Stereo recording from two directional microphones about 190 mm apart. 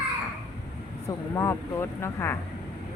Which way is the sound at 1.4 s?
15° left (ahead or behind).